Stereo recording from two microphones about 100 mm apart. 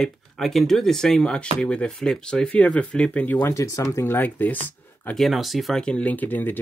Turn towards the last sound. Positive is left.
turn(degrees=20)  # may be behind; listen again after turning